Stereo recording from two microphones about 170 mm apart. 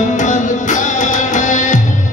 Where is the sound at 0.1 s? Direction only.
45° left (ahead or behind).